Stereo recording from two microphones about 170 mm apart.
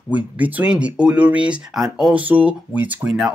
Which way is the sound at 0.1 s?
10° right (ahead or behind).